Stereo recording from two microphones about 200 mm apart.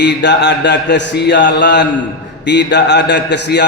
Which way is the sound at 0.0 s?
60° left (ahead or behind).